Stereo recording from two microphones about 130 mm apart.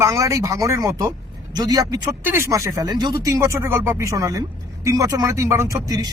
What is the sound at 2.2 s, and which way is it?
Speech, 20° right (ahead or behind).